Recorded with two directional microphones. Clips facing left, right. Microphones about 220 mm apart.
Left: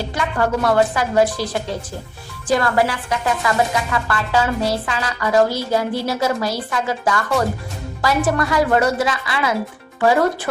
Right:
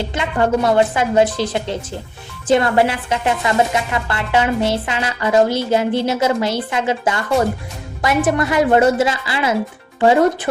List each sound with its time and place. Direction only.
0.1 s speech: 20° right (ahead or behind)